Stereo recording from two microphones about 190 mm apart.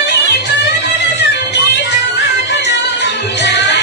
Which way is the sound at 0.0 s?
60° left (ahead or behind).